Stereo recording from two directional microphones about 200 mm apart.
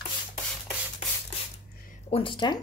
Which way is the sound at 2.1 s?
25° left (ahead or behind).